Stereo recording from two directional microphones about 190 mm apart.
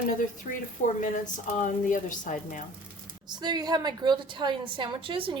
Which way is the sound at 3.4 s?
20° right (ahead or behind).